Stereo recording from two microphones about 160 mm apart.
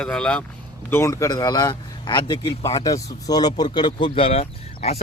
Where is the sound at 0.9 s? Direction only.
15° left (ahead or behind); by 5.0 s 40° left (ahead or behind).